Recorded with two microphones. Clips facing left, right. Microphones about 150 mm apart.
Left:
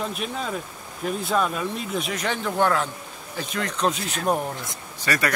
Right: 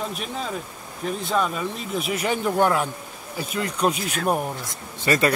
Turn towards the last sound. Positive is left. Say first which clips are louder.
# right 4 dB
turn(degrees=-25)  # may be behind; listen again after turning